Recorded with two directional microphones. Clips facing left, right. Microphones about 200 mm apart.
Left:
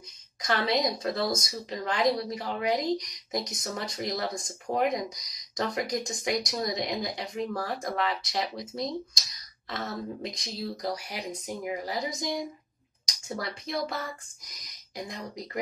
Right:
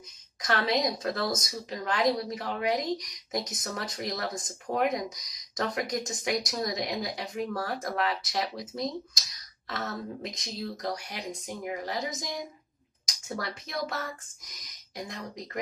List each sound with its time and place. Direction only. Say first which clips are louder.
0.4 s a woman's voice: left 1 dB; centre (ahead or behind)